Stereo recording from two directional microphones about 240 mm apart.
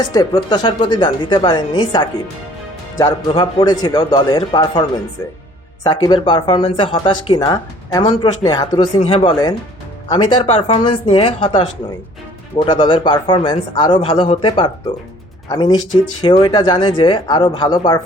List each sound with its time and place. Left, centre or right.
0.1 s speech: centre